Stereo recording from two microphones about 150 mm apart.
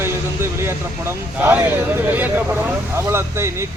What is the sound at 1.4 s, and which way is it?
Speech, 10° right (ahead or behind).